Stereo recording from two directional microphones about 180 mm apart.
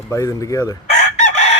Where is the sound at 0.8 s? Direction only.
40° left (ahead or behind).